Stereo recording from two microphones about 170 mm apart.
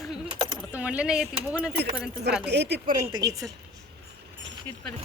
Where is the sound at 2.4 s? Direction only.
80° right.